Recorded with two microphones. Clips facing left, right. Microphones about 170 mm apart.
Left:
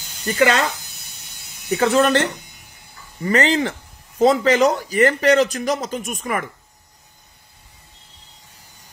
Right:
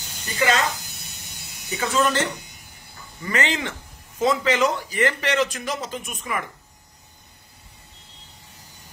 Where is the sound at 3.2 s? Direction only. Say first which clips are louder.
Left 7 dB; 35° left (ahead or behind).